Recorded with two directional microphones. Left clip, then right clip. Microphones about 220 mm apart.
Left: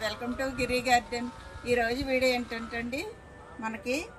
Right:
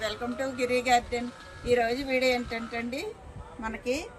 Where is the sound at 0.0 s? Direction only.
10° right (ahead or behind).